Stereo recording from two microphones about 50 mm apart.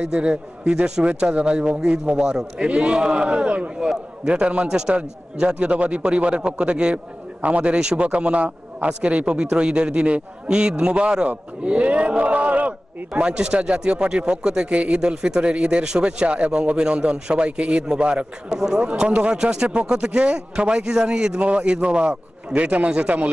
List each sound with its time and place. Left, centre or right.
0.0 s a man's voice: centre
18.9 s a man's voice: right